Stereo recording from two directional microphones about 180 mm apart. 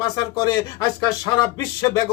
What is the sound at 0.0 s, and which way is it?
Speech, 20° left (ahead or behind).